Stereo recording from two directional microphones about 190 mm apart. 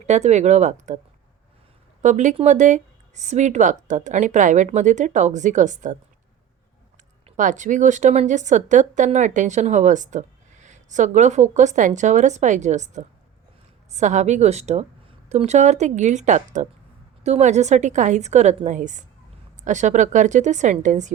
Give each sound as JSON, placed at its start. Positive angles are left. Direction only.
{"t": 0.0, "sound": "a woman's voice", "side_deg": -35}
{"t": 2.0, "sound": "a woman's voice", "side_deg": -40}
{"t": 7.3, "sound": "a woman's voice", "side_deg": -40}